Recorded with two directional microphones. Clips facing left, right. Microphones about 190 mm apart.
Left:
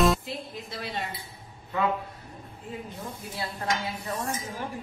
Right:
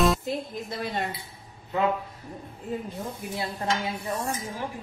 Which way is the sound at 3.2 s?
15° right (ahead or behind).